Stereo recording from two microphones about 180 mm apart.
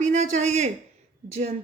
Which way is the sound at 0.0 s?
40° right (ahead or behind).